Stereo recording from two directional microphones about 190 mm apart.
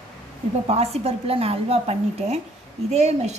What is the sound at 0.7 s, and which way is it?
A woman's voice, 30° right (ahead or behind).